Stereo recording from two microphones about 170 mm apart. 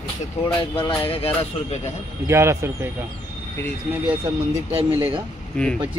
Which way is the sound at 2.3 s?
15° right (ahead or behind).